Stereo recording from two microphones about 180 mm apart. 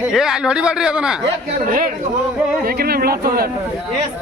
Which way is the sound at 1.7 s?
50° right (ahead or behind).